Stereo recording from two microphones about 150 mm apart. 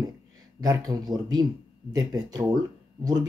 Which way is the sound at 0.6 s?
25° right (ahead or behind).